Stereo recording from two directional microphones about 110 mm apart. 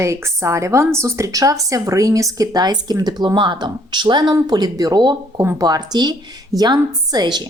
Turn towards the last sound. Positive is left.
turn(degrees=-40)  # may be behind; listen again after turning